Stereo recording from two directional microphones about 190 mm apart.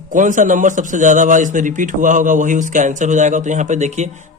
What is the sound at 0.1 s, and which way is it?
A man's voice, 40° right (ahead or behind).